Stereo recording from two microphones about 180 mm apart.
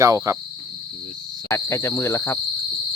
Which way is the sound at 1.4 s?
15° left (ahead or behind).